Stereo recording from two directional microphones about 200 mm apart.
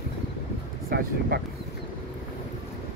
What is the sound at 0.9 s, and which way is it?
Speech, 50° right (ahead or behind).